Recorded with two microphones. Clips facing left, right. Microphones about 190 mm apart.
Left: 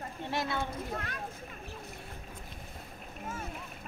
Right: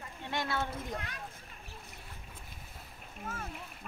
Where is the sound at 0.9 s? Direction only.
50° left (ahead or behind).